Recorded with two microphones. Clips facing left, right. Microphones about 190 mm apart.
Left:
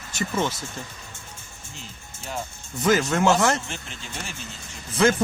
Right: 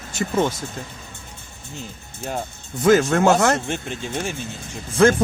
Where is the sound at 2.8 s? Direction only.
55° right (ahead or behind).